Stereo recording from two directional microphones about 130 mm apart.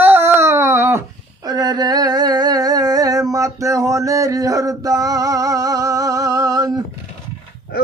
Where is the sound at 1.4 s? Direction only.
30° right (ahead or behind).